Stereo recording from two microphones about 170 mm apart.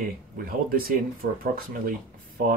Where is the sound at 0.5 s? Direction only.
60° right (ahead or behind).